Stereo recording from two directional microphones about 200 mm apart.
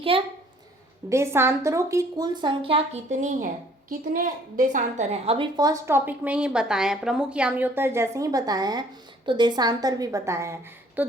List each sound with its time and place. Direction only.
0.1 s a woman's voice: 25° right (ahead or behind)
1.1 s a woman's voice: 10° right (ahead or behind)